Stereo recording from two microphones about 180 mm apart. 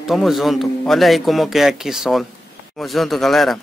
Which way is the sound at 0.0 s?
Centre (ahead or behind).